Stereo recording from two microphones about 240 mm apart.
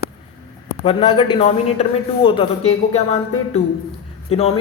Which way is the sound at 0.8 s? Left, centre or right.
Left.